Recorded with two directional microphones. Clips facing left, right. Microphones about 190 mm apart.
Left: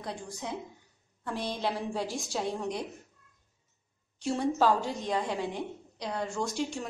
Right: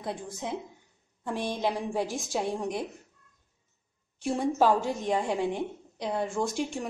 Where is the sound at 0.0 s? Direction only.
20° right (ahead or behind).